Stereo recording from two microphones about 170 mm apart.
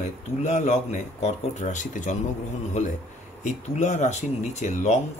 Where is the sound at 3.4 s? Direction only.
45° left (ahead or behind).